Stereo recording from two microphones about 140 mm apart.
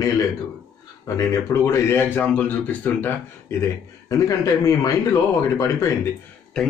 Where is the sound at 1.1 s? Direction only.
25° left (ahead or behind).